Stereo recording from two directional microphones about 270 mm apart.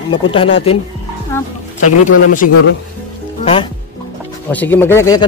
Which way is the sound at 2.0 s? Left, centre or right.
Left.